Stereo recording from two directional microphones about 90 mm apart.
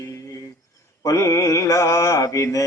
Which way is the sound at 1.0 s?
35° left (ahead or behind).